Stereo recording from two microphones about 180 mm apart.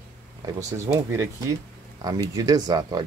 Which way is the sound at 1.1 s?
15° right (ahead or behind).